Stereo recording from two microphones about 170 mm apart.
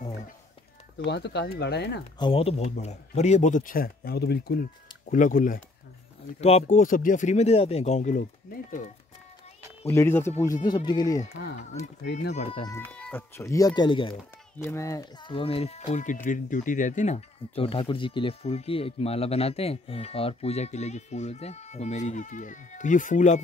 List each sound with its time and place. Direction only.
0.9 s speech: 80° left
2.1 s speech: 30° left (ahead or behind); by 8.9 s 50° left (ahead or behind)
9.8 s speech: 15° left (ahead or behind)
12.0 s speech: 80° left
12.9 s cat: 5° left (ahead or behind)
13.4 s speech: 20° left (ahead or behind)
14.6 s speech: 15° left (ahead or behind); by 23.4 s 45° left (ahead or behind)